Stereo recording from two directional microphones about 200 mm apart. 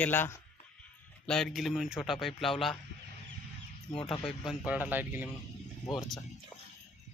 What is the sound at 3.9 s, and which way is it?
Speech, 25° left (ahead or behind).